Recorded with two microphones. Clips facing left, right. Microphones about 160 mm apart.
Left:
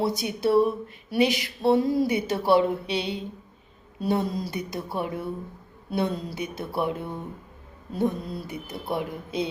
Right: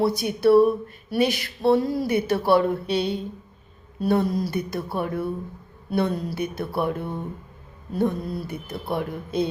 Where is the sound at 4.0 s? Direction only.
20° left (ahead or behind).